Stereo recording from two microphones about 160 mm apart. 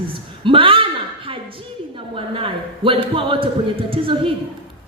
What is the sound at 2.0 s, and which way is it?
A man's voice, 35° right (ahead or behind).